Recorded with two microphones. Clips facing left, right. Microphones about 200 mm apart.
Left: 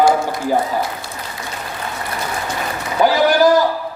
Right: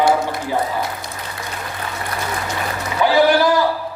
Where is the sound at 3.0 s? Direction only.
40° left (ahead or behind).